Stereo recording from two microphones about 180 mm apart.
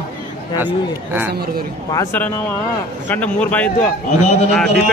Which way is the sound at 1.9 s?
15° left (ahead or behind).